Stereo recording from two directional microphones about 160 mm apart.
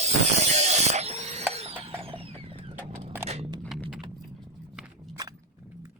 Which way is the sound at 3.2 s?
40° right (ahead or behind).